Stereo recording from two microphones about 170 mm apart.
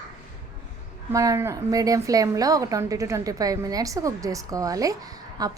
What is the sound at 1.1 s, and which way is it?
A woman's voice, 20° right (ahead or behind).